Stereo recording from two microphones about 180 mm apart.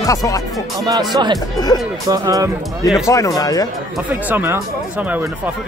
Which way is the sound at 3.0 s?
20° left (ahead or behind).